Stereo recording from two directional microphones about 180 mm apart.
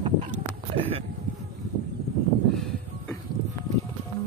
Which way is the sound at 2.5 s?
Centre (ahead or behind).